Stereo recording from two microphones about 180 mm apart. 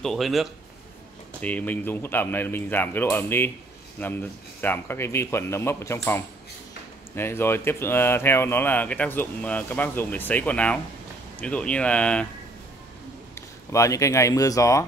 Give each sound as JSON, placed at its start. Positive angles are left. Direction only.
{"t": 0.0, "sound": "speech", "side_deg": 0}
{"t": 13.3, "sound": "speech", "side_deg": 15}